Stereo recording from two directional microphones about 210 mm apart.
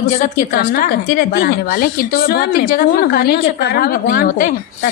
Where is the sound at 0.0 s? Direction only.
40° left (ahead or behind).